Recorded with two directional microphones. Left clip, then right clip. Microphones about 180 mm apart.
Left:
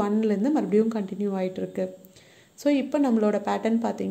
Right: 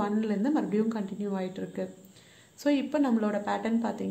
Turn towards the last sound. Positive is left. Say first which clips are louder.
# left 5 dB
turn(degrees=30)  # may be behind; listen again after turning